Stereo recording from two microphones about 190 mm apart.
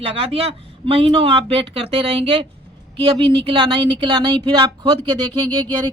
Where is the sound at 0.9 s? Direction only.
30° right (ahead or behind).